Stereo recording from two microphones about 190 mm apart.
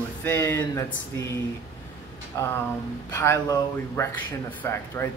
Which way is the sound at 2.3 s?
15° left (ahead or behind).